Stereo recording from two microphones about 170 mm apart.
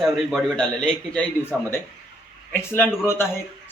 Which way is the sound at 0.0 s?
Centre (ahead or behind).